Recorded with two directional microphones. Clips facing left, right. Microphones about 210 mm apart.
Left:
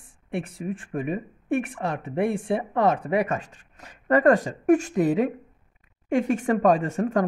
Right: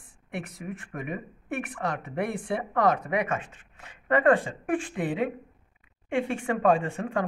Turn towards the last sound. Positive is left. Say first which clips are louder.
# left 5 dB
turn(degrees=40)  # may be behind; listen again after turning